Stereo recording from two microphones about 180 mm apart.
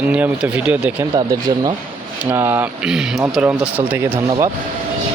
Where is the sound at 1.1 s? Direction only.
20° right (ahead or behind).